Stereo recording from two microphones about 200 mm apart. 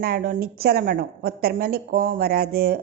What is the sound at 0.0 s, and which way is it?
A woman's voice, 50° right (ahead or behind).